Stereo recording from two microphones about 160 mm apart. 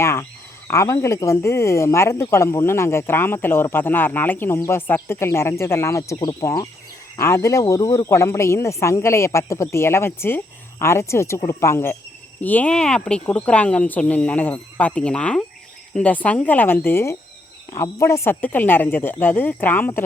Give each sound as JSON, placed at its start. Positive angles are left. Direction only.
{"t": 0.0, "sound": "speech", "side_deg": 15}